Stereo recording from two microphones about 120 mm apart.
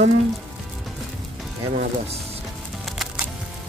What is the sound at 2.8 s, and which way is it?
Music, centre (ahead or behind).